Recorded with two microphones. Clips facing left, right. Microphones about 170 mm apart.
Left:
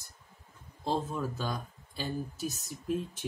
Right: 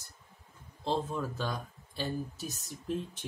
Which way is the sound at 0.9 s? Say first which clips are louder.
Even; 5° left (ahead or behind).